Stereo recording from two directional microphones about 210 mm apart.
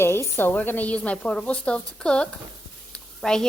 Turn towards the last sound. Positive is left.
turn(degrees=5)  # may be behind; listen again after turning